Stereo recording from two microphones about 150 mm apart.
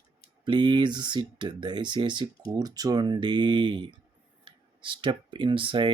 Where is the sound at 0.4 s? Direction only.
30° right (ahead or behind).